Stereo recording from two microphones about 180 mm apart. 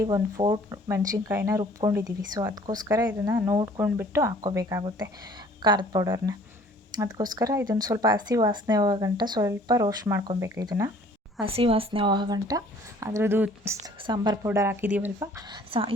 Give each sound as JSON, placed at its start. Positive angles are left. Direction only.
{"t": 0.0, "sound": "speech", "side_deg": -20}
{"t": 11.4, "sound": "speech", "side_deg": -30}
{"t": 14.0, "sound": "speech", "side_deg": -25}
{"t": 14.4, "sound": "speech", "side_deg": -15}